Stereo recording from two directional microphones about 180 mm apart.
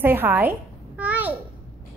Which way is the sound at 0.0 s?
10° right (ahead or behind).